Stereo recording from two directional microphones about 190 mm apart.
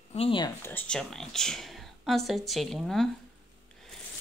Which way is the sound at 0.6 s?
10° left (ahead or behind).